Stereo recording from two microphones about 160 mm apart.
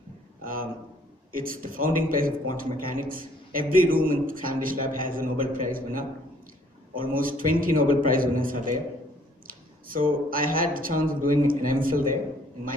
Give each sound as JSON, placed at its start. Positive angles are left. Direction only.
{"t": 0.4, "sound": "a man's voice", "side_deg": -60}